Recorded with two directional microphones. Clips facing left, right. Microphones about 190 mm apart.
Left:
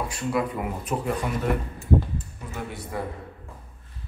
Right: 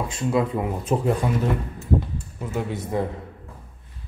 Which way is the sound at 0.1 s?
25° right (ahead or behind).